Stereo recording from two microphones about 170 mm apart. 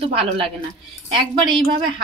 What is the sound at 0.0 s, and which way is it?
A woman's voice, 35° right (ahead or behind).